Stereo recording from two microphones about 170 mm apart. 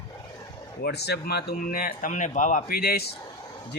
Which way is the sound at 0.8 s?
75° left (ahead or behind).